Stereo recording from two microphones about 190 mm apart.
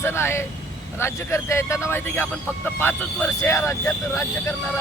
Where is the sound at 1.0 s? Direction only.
15° left (ahead or behind).